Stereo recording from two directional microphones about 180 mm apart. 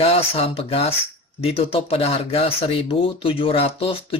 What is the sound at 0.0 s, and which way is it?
Speech, 35° left (ahead or behind).